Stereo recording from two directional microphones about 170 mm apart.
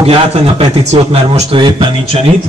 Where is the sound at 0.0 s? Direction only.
35° right (ahead or behind).